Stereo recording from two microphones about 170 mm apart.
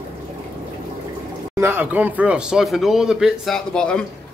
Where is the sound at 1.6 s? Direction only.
15° right (ahead or behind); by 4.0 s 5° left (ahead or behind).